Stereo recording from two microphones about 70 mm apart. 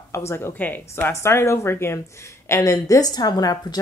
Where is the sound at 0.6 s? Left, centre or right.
Left.